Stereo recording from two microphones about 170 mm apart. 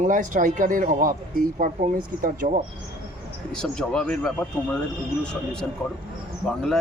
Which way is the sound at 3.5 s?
5° left (ahead or behind).